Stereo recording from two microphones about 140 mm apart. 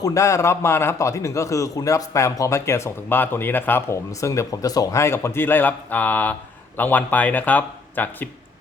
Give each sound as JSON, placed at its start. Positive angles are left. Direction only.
{"t": 0.0, "sound": "a man's voice", "side_deg": 20}